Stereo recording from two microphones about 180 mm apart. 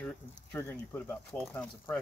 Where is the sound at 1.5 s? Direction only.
10° left (ahead or behind).